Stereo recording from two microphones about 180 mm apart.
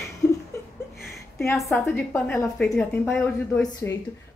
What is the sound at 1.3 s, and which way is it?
A woman's voice, 15° left (ahead or behind).